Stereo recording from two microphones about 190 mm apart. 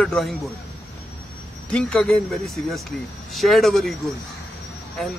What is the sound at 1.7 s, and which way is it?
A man's voice, 5° left (ahead or behind).